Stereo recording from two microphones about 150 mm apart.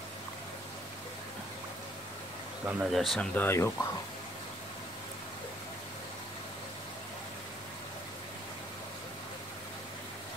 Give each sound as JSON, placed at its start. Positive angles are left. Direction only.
{"t": 2.6, "sound": "speech", "side_deg": -10}
{"t": 2.9, "sound": "speech", "side_deg": 0}
{"t": 3.3, "sound": "speech", "side_deg": 15}